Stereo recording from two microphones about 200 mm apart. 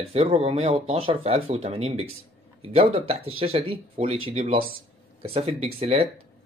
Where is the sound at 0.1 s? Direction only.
30° right (ahead or behind).